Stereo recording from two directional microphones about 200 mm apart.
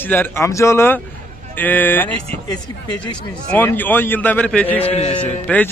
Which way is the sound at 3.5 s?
10° left (ahead or behind).